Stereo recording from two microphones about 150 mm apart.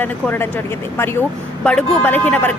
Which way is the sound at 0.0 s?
15° left (ahead or behind).